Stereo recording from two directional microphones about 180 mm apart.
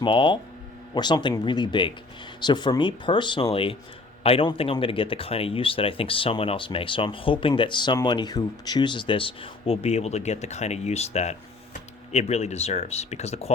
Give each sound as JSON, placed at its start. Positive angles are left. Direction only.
{"t": 0.0, "sound": "speech", "side_deg": 25}